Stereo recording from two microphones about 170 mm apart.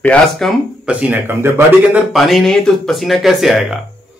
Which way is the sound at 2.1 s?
Centre (ahead or behind).